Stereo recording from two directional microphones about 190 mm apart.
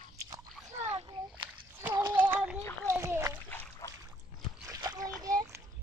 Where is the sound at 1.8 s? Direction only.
15° right (ahead or behind).